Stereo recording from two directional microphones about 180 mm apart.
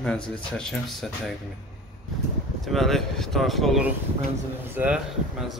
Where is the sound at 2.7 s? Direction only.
Centre (ahead or behind).